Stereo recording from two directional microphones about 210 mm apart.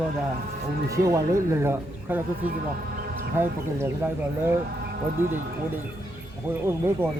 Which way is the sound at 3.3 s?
10° right (ahead or behind).